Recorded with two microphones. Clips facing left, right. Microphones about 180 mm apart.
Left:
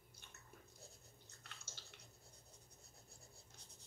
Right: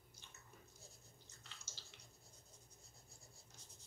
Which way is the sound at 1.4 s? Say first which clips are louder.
Left 2 dB; 60° left (ahead or behind).